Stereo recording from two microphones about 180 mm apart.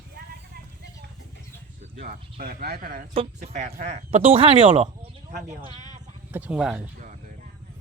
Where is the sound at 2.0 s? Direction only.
50° right (ahead or behind).